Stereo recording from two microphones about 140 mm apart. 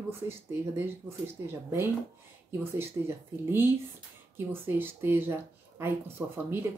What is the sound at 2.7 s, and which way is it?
A woman's voice, 15° right (ahead or behind).